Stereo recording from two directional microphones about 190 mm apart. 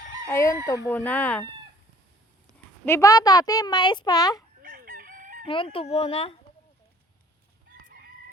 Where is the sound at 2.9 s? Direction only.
15° left (ahead or behind).